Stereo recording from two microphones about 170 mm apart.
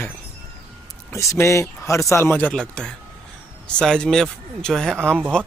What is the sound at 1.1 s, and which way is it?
Speech, 15° left (ahead or behind).